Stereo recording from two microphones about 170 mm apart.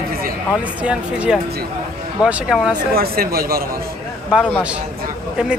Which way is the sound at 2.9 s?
60° right (ahead or behind).